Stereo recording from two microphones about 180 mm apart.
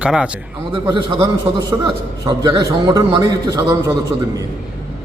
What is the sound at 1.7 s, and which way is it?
A man's voice, 20° right (ahead or behind).